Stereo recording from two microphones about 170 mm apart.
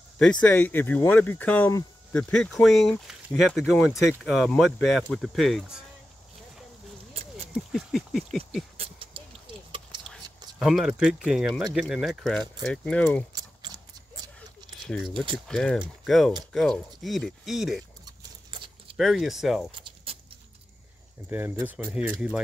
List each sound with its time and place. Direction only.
0.2 s speech: 5° left (ahead or behind)
3.9 s speech: 15° left (ahead or behind)
4.2 s speech: centre (ahead or behind)
7.5 s speech: centre (ahead or behind)
8.7 s a sound: 35° right (ahead or behind)
10.0 s a sound: centre (ahead or behind)
11.2 s speech: 5° right (ahead or behind)
13.3 s a sound: 25° right (ahead or behind)
14.9 s speech: centre (ahead or behind)
18.0 s keys jangling: 30° right (ahead or behind)
18.9 s speech: centre (ahead or behind)
19.7 s keys jangling: 30° right (ahead or behind)
21.3 s speech: 15° right (ahead or behind)